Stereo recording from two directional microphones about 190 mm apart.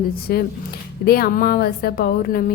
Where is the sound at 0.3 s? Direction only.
55° left (ahead or behind).